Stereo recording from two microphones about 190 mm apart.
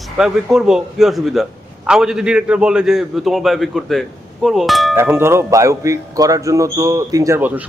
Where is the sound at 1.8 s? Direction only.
5° right (ahead or behind).